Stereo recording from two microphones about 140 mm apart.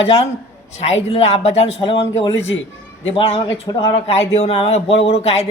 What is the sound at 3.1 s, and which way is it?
A man's voice, 40° left (ahead or behind).